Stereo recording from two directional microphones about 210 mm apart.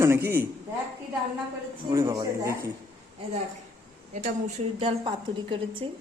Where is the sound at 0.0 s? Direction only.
10° right (ahead or behind).